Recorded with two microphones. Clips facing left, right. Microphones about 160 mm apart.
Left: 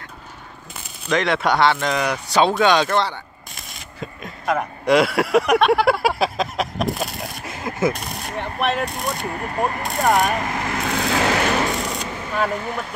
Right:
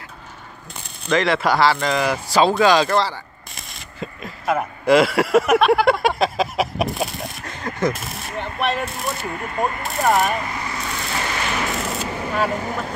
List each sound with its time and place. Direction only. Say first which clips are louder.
1.0 s speech: right 1 dB; centre (ahead or behind)
9.3 s speech: even; 40° left (ahead or behind)
9.8 s speech: even; centre (ahead or behind)
10.3 s speech: left 2 dB; 45° left (ahead or behind)
10.8 s vehicle: left 9 dB; 65° left (ahead or behind)
11.8 s a sound: right 2 dB; centre (ahead or behind)